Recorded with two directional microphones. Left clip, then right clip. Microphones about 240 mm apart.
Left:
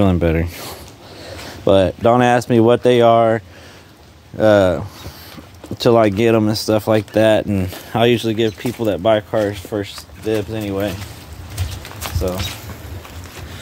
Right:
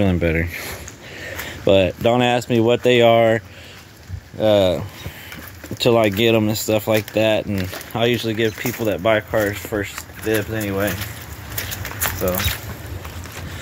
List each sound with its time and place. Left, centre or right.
0.0 s speech: centre
1.6 s speech: centre
4.4 s speech: left